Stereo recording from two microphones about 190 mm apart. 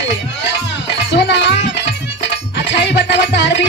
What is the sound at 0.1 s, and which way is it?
Music, 65° left (ahead or behind).